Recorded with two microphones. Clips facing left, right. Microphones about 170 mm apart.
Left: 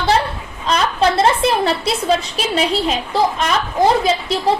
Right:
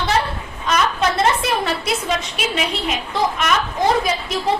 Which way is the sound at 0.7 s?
30° left (ahead or behind).